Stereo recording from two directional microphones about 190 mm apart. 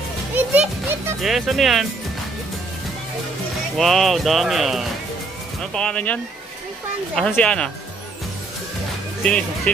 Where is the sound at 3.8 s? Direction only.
Centre (ahead or behind).